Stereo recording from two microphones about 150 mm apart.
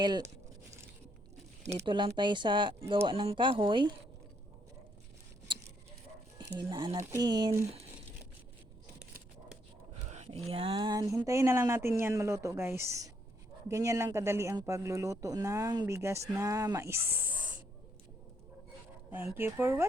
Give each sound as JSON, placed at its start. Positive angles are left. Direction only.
{"t": 0.0, "sound": "speech", "side_deg": -30}
{"t": 1.9, "sound": "speech", "side_deg": -30}
{"t": 6.6, "sound": "speech", "side_deg": -30}
{"t": 6.9, "sound": "speech", "side_deg": -20}
{"t": 10.1, "sound": "speech", "side_deg": -45}
{"t": 17.1, "sound": "snake", "side_deg": -10}
{"t": 19.1, "sound": "speech", "side_deg": -15}